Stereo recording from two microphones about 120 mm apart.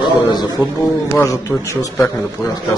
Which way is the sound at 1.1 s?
25° left (ahead or behind).